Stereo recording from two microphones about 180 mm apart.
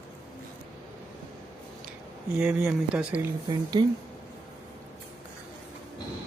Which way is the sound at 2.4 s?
10° right (ahead or behind).